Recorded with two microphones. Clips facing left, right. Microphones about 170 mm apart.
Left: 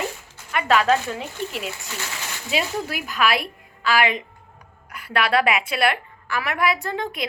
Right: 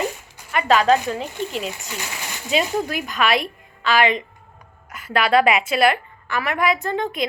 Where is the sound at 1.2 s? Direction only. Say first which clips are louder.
Right 3 dB; 35° right (ahead or behind).